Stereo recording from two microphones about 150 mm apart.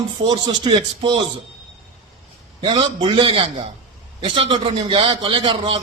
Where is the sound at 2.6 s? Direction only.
35° right (ahead or behind).